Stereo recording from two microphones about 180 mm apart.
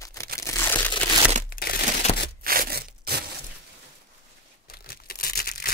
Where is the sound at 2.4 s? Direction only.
55° right (ahead or behind).